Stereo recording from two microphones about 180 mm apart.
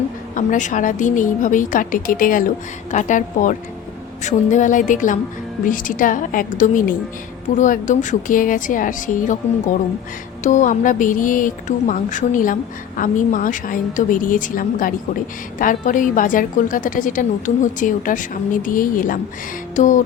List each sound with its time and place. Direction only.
0.3 s a woman's voice: 45° left (ahead or behind)
10.4 s a woman's voice: 45° left (ahead or behind)
19.7 s music: 45° left (ahead or behind)